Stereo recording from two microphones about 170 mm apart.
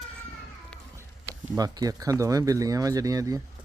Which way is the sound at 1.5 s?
20° right (ahead or behind).